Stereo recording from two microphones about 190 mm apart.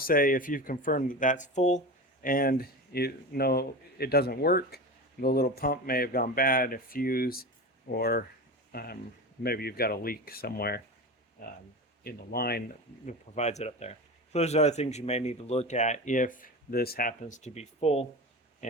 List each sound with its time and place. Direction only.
0.0 s speech: 50° left (ahead or behind)
2.2 s speech: 50° left (ahead or behind)
13.1 s speech: 35° left (ahead or behind)